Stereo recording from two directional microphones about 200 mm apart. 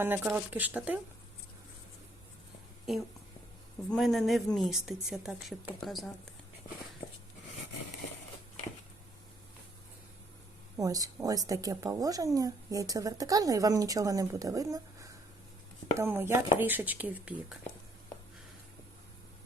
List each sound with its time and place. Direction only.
0.0 s a woman's voice: 10° right (ahead or behind)
3.8 s speech: centre (ahead or behind)
10.8 s a woman's voice: 15° right (ahead or behind)